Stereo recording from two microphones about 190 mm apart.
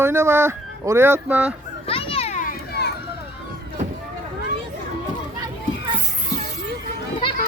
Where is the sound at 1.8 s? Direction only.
30° left (ahead or behind); by 2.8 s 50° left (ahead or behind).